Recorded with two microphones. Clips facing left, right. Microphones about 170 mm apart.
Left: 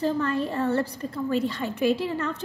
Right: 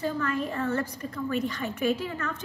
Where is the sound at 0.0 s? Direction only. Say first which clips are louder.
Left 4 dB; 30° left (ahead or behind).